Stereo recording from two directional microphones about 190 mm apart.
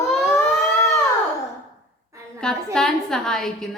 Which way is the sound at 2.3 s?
5° left (ahead or behind).